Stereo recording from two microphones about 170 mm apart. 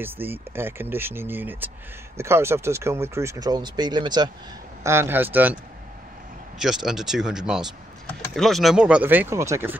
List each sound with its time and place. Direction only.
0.0 s speech: 10° right (ahead or behind)
4.8 s speech: 15° right (ahead or behind)
6.6 s speech: 5° right (ahead or behind)